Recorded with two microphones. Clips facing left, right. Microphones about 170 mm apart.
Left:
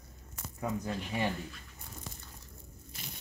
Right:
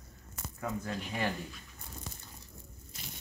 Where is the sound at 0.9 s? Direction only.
Centre (ahead or behind).